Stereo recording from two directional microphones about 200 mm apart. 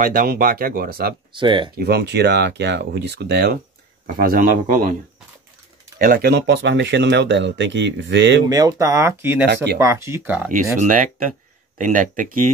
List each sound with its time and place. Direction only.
0.0 s speech: 45° right (ahead or behind)
1.3 s speech: 25° right (ahead or behind)
1.8 s speech: 55° right (ahead or behind)
5.9 s speech: 45° right (ahead or behind); by 8.5 s 60° right (ahead or behind)
8.5 s speech: 15° right (ahead or behind)
10.5 s speech: 40° right (ahead or behind)